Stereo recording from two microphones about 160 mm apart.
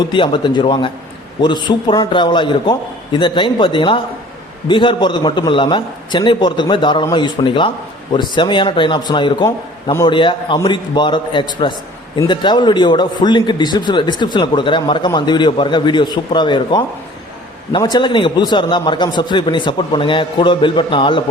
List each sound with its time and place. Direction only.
0.0 s a man's voice: 30° left (ahead or behind)